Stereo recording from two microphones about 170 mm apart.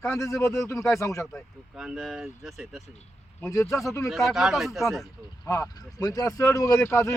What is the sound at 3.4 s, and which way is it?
Speech, 15° left (ahead or behind).